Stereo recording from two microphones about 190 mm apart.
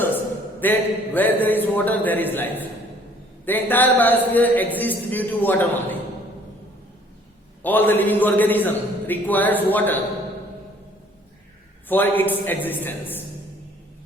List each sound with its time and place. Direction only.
0.6 s a man's voice: 10° left (ahead or behind)
7.6 s a man's voice: 10° left (ahead or behind)
11.9 s a man's voice: 10° left (ahead or behind)